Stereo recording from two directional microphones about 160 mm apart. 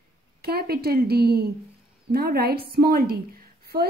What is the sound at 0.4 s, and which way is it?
A woman's voice, 75° right (ahead or behind).